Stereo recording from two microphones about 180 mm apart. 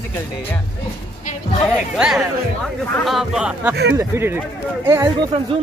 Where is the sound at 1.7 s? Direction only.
5° right (ahead or behind).